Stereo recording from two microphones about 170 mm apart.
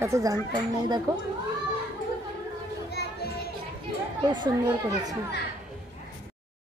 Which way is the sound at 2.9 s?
70° left (ahead or behind).